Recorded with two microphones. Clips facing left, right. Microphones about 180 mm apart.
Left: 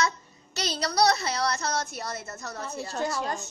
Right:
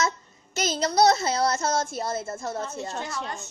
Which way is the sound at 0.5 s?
20° right (ahead or behind).